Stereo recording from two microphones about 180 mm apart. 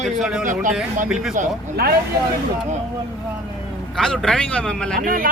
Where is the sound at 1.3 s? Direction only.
50° right (ahead or behind).